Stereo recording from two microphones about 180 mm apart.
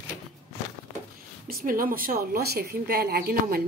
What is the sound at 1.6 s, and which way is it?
A woman's voice, 50° right (ahead or behind).